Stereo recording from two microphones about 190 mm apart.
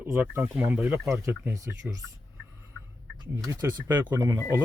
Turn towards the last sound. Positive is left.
turn(degrees=-15)  # may be behind; listen again after turning